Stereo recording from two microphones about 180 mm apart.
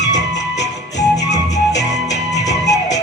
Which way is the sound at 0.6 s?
75° left (ahead or behind).